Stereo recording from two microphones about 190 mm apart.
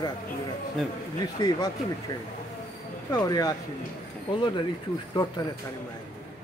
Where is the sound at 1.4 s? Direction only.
20° left (ahead or behind).